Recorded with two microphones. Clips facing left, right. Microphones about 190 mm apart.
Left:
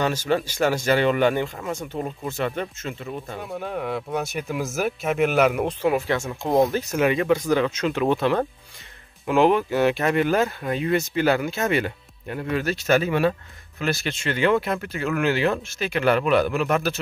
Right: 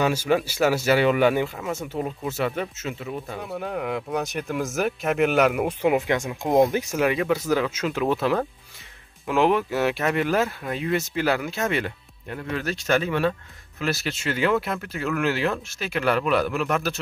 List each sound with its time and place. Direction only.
0.0 s speech: 10° right (ahead or behind)
5.8 s speech: 20° right (ahead or behind)
6.9 s speech: centre (ahead or behind)
13.7 s speech: centre (ahead or behind)